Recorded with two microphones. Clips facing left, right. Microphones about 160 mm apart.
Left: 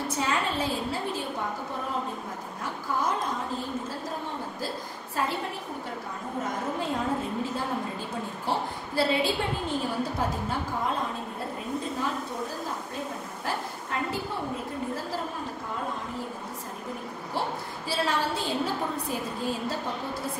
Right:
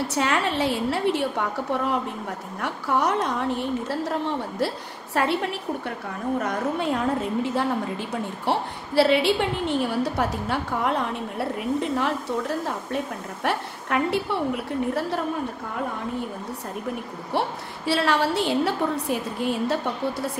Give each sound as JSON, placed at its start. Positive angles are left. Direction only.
{"t": 0.1, "sound": "a woman's voice", "side_deg": -75}
{"t": 8.5, "sound": "a woman's voice", "side_deg": -75}
{"t": 17.3, "sound": "a woman's voice", "side_deg": -70}